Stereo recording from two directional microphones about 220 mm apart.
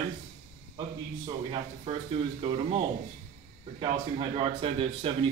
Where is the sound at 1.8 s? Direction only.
25° right (ahead or behind).